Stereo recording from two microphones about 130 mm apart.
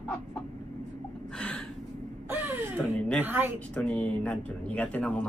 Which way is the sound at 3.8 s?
10° left (ahead or behind).